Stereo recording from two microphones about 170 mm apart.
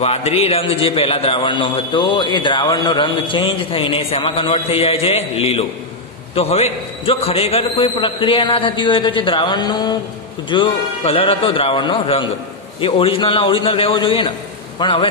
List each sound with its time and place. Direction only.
0.0 s a man's voice: 35° left (ahead or behind)